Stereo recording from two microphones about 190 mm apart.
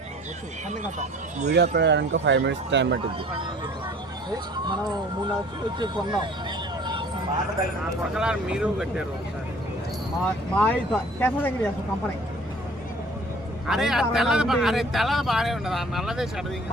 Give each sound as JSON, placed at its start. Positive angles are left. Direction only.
{"t": 0.7, "sound": "speech", "side_deg": -40}
{"t": 1.5, "sound": "speech", "side_deg": -60}
{"t": 4.3, "sound": "speech", "side_deg": -20}
{"t": 8.1, "sound": "speech", "side_deg": -5}
{"t": 10.5, "sound": "speech", "side_deg": 5}
{"t": 13.7, "sound": "speech", "side_deg": 0}